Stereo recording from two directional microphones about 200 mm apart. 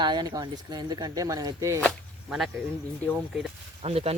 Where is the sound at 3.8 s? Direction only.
30° right (ahead or behind).